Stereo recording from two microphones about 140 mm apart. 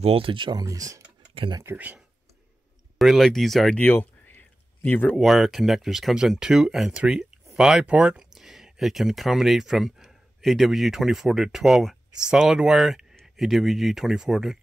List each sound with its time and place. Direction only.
0.0 s speech: 40° right (ahead or behind); by 1.0 s 25° right (ahead or behind)
1.3 s tick-tock: 40° right (ahead or behind)
1.6 s speech: 15° right (ahead or behind)
3.0 s speech: centre (ahead or behind)
5.2 s speech: centre (ahead or behind)